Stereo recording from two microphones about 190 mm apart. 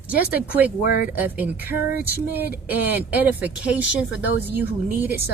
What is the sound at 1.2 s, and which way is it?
Speech, 10° right (ahead or behind).